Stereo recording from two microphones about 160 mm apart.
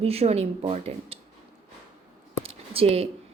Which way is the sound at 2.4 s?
35° right (ahead or behind).